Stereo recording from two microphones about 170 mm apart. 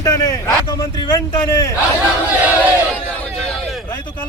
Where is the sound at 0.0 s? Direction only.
20° left (ahead or behind).